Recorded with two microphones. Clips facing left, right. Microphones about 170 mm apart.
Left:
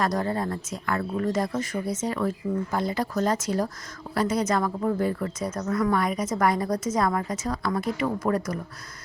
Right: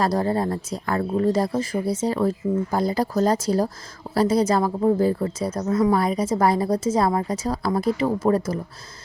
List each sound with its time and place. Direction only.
0.0 s a woman's voice: 30° right (ahead or behind)